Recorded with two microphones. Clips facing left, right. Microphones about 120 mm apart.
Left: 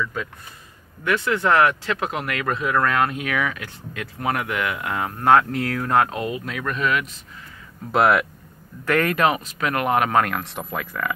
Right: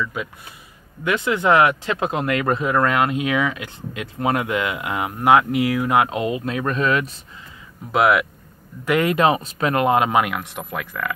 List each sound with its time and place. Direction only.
0.0 s speech: 10° right (ahead or behind); by 7.1 s 30° right (ahead or behind)
7.9 s speech: centre (ahead or behind)
8.8 s speech: 15° right (ahead or behind)
10.2 s speech: 5° right (ahead or behind)